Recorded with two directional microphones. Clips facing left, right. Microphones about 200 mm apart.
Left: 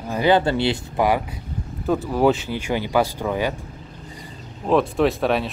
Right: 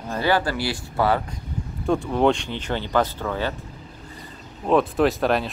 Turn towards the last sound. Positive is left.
turn(degrees=0)  # may be behind; listen again after turning